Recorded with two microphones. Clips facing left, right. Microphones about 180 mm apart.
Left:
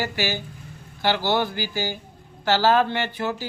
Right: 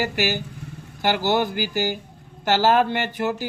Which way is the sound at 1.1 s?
15° right (ahead or behind).